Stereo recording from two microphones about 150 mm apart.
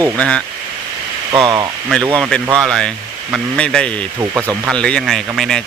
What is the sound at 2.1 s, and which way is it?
Speech, 5° left (ahead or behind).